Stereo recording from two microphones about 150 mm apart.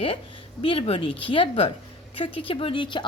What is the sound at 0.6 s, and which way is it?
A woman's voice, 35° left (ahead or behind).